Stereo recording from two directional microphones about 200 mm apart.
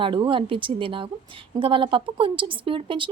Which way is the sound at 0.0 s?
25° right (ahead or behind).